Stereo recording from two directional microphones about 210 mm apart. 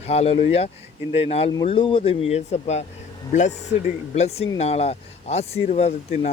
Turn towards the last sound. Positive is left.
turn(degrees=35)  # may be behind; listen again after turning